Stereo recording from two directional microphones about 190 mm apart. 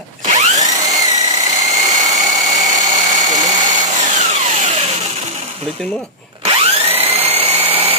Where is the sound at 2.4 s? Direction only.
40° right (ahead or behind).